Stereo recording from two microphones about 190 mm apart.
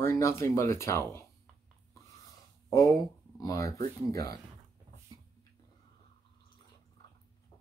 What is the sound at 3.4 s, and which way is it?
Speech, 15° left (ahead or behind).